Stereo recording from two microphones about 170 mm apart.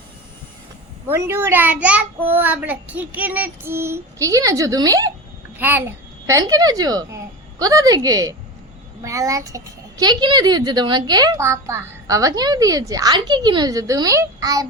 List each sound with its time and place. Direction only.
1.1 s a child's voice: 15° right (ahead or behind)